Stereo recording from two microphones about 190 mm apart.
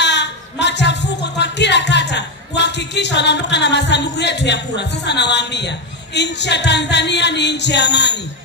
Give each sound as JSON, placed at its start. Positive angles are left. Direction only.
{"t": 0.0, "sound": "speech", "side_deg": 65}